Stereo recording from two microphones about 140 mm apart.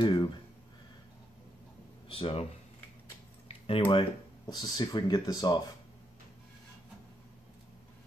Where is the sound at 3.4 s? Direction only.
40° left (ahead or behind).